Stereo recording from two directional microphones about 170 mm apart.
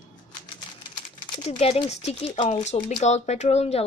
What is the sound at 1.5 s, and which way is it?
Speech, 35° left (ahead or behind).